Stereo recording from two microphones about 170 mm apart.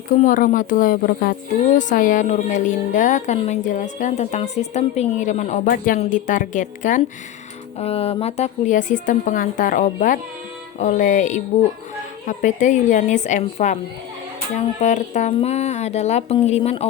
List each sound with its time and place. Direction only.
0.2 s speech: 50° left (ahead or behind)
5.6 s speech: 55° left (ahead or behind)
7.8 s speech: 35° left (ahead or behind)